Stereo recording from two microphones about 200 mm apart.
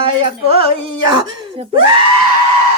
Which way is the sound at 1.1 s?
25° right (ahead or behind).